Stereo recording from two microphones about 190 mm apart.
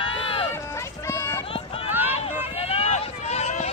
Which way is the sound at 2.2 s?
30° left (ahead or behind).